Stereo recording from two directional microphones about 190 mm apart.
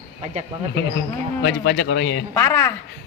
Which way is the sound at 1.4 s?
65° left (ahead or behind).